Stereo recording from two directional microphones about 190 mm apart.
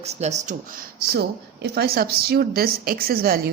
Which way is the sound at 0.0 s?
35° right (ahead or behind).